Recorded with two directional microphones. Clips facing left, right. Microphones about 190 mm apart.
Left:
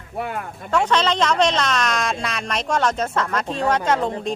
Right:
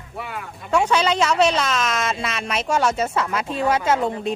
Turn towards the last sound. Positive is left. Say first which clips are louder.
# even
turn(degrees=-5)  # may be behind; listen again after turning